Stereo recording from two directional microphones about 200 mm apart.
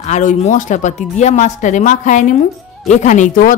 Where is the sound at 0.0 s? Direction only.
40° left (ahead or behind).